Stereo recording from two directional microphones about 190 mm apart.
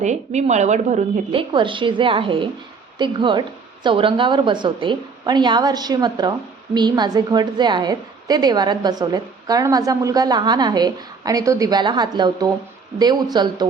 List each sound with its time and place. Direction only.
0.0 s a woman's voice: 40° right (ahead or behind); by 13.7 s 20° right (ahead or behind)